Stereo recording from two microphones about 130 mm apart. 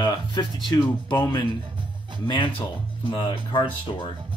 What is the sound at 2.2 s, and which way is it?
A man's voice, 35° left (ahead or behind).